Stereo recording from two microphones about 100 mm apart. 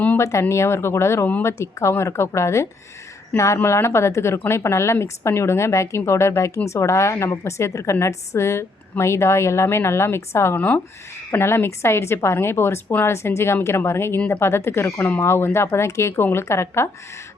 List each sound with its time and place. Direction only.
0.2 s a woman's voice: 30° left (ahead or behind)